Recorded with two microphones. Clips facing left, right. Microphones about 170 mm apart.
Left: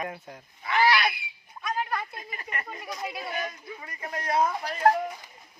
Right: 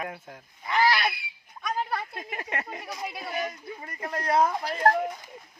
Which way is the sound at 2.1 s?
80° right.